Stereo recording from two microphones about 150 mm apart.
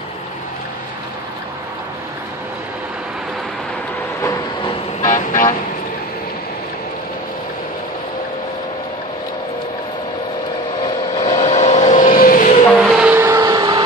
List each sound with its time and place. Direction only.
5.1 s vehicle: 60° left (ahead or behind)
11.2 s vehicle: 45° left (ahead or behind); by 12.5 s 65° left (ahead or behind)
12.7 s vehicle: 5° right (ahead or behind); by 13.8 s 25° right (ahead or behind)